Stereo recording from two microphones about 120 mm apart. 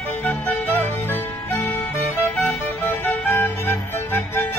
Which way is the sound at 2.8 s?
20° left (ahead or behind).